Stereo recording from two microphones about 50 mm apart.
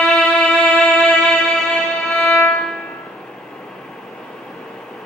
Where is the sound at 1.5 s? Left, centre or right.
Centre.